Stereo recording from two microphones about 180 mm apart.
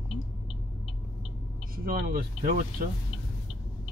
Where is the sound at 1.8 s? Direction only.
55° right (ahead or behind).